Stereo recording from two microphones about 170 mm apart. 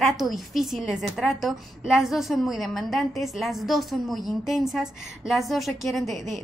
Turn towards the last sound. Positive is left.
turn(degrees=0)  # may be behind; listen again after turning